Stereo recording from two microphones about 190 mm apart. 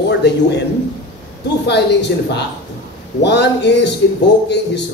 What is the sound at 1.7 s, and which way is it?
A man's voice, 65° left (ahead or behind).